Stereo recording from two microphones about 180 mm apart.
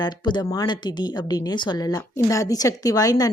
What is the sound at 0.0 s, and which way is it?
A woman's voice, 25° left (ahead or behind).